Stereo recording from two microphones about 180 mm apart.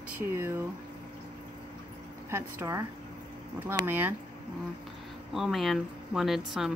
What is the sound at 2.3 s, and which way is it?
Speech, 15° right (ahead or behind).